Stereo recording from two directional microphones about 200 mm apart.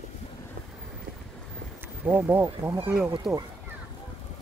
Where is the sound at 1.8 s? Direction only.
10° right (ahead or behind).